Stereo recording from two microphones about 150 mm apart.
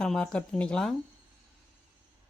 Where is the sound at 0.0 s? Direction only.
5° left (ahead or behind).